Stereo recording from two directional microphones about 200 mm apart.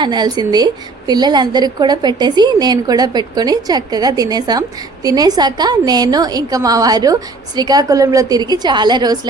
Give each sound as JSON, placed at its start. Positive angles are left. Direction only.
{"t": 0.0, "sound": "a woman's voice", "side_deg": -20}